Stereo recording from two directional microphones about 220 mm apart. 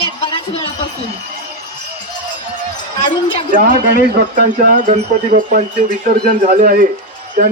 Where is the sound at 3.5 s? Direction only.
35° right (ahead or behind).